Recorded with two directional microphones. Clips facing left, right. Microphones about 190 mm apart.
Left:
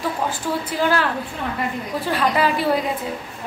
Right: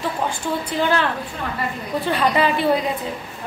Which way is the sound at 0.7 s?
5° left (ahead or behind).